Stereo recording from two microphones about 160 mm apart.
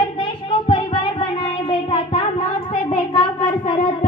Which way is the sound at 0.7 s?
35° left (ahead or behind).